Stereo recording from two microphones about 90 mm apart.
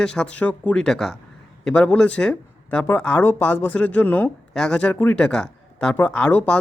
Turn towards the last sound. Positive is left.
turn(degrees=15)  # may be behind; listen again after turning